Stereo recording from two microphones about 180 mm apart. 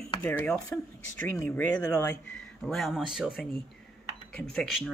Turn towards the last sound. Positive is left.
turn(degrees=0)  # may be behind; listen again after turning